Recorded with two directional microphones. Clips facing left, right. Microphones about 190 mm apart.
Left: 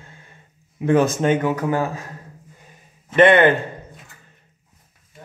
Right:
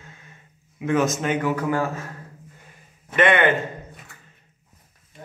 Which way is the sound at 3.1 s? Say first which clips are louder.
Left 6 dB; 35° left (ahead or behind).